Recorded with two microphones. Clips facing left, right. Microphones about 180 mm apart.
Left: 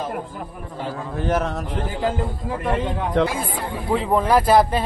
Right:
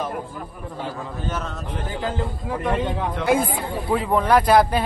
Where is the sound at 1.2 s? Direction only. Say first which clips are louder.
Left 9 dB; 65° left (ahead or behind).